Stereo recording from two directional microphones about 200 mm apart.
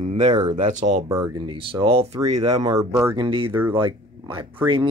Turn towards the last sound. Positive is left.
turn(degrees=-10)  # may be behind; listen again after turning